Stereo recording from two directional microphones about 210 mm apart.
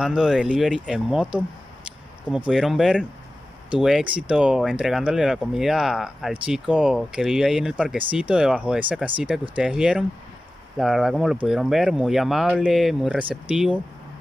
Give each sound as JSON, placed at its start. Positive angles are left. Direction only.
{"t": 0.0, "sound": "speech", "side_deg": 0}